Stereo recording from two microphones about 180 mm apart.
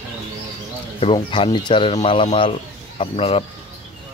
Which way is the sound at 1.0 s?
30° left (ahead or behind).